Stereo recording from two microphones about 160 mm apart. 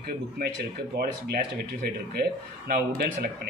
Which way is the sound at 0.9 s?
85° right.